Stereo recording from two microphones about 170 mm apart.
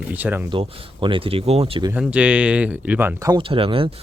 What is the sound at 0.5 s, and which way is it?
Speech, 35° right (ahead or behind).